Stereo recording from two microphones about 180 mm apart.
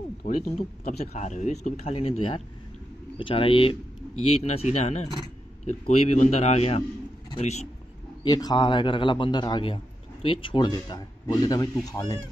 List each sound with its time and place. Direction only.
0.2 s a man's voice: 35° left (ahead or behind)
8.2 s a man's voice: 20° left (ahead or behind)